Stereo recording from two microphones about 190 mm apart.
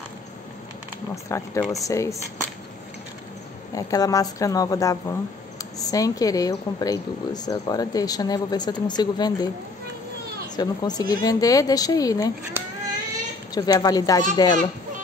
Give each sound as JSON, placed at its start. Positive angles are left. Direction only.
{"t": 1.1, "sound": "a woman's voice", "side_deg": 15}
{"t": 3.7, "sound": "a woman's voice", "side_deg": 15}
{"t": 10.5, "sound": "speech", "side_deg": 20}
{"t": 12.6, "sound": "cat", "side_deg": -10}
{"t": 13.6, "sound": "speech", "side_deg": 20}